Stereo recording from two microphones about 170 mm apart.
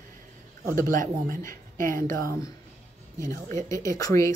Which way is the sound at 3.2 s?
20° left (ahead or behind).